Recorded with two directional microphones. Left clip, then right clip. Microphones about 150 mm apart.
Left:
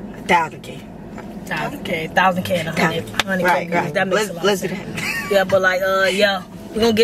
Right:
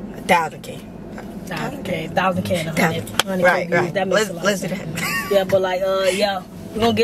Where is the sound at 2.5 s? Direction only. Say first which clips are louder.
Left 1 dB; 10° right (ahead or behind).